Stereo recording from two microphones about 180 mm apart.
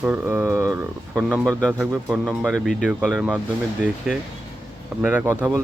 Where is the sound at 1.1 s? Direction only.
5° left (ahead or behind).